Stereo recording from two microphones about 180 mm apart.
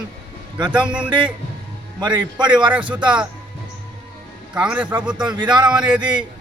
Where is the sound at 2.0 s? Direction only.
25° right (ahead or behind).